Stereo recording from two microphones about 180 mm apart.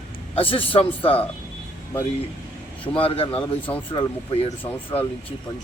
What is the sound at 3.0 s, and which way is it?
A man's voice, 30° left (ahead or behind).